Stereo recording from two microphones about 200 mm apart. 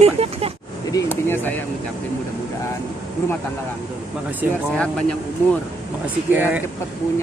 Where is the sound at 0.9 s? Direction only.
10° left (ahead or behind).